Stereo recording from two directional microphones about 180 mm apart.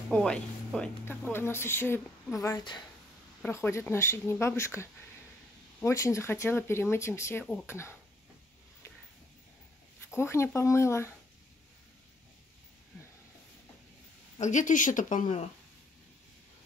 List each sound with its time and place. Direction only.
0.1 s speech: 5° left (ahead or behind)
10.1 s speech: 15° left (ahead or behind)
14.4 s speech: 45° left (ahead or behind)